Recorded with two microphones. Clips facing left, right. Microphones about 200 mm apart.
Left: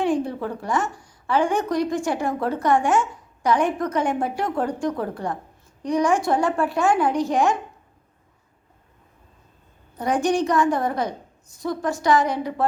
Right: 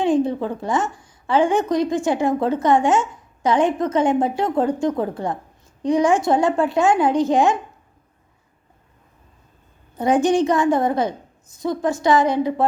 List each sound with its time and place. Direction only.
0.0 s a woman's voice: 20° right (ahead or behind)
10.0 s a woman's voice: 25° right (ahead or behind)